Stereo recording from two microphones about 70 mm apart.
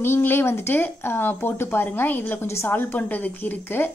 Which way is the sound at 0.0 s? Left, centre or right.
Left.